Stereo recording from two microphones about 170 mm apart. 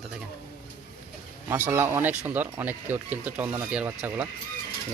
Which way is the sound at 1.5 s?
15° right (ahead or behind).